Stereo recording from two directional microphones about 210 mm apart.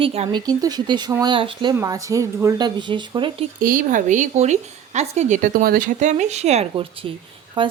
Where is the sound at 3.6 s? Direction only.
40° right (ahead or behind).